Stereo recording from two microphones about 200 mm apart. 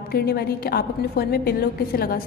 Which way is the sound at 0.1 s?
50° left (ahead or behind).